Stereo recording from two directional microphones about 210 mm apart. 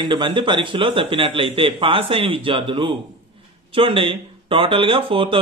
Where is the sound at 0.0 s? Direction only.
20° right (ahead or behind).